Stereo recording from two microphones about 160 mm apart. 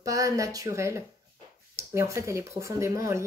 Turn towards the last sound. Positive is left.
turn(degrees=-20)  # may be behind; listen again after turning